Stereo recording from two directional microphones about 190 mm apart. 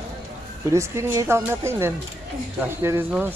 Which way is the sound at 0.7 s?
15° right (ahead or behind).